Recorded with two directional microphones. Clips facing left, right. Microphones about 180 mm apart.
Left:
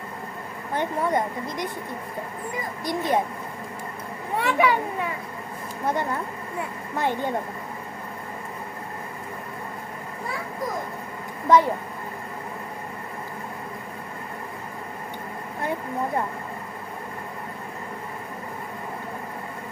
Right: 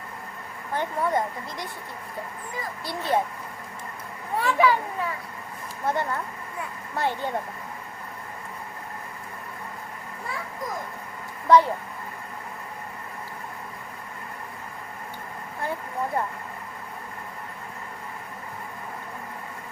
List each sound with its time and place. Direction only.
0.7 s speech: 20° left (ahead or behind)
2.8 s speech: 15° left (ahead or behind)
4.4 s speech: 25° left (ahead or behind)
5.8 s speech: 15° left (ahead or behind)
11.4 s speech: 15° left (ahead or behind)